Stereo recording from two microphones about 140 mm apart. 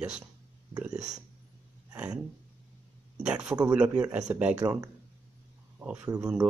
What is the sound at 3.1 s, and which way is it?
Speech, 5° right (ahead or behind).